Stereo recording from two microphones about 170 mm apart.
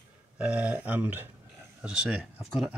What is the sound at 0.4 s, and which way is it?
Speech, 5° right (ahead or behind).